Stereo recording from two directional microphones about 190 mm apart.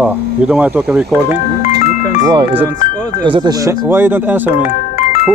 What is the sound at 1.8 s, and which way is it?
Music, 40° left (ahead or behind).